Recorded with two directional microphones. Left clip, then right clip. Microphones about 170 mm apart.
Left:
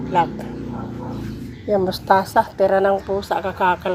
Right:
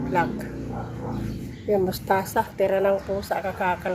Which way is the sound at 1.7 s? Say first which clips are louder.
Left 6 dB; 10° left (ahead or behind).